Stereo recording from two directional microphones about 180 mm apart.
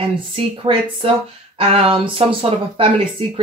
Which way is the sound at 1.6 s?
30° right (ahead or behind).